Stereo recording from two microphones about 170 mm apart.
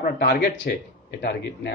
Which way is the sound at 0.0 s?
75° left (ahead or behind).